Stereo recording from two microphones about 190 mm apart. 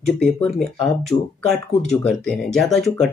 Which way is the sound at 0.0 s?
Centre (ahead or behind).